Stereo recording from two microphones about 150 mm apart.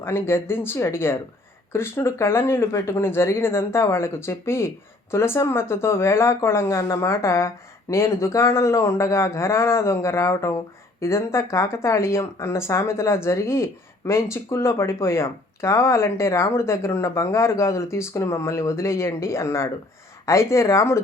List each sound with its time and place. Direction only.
0.0 s speech: 15° left (ahead or behind)